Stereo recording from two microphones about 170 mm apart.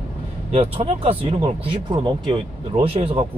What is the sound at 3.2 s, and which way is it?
Speech, 40° right (ahead or behind).